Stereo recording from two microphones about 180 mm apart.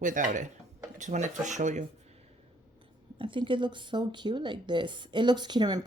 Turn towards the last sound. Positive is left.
turn(degrees=-25)  # may be behind; listen again after turning